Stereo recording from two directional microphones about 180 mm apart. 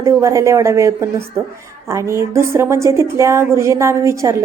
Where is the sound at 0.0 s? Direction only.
15° right (ahead or behind).